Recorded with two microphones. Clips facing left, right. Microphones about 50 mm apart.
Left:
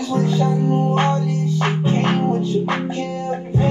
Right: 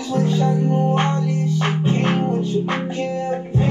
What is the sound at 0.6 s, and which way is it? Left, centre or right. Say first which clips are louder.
Music: left 1 dB; right.